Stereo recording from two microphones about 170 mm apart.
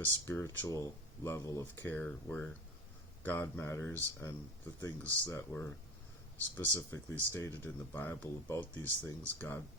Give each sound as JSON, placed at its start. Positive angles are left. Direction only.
{"t": 0.0, "sound": "speech", "side_deg": 15}